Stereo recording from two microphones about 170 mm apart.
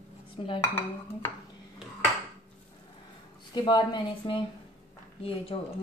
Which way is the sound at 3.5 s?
25° left (ahead or behind).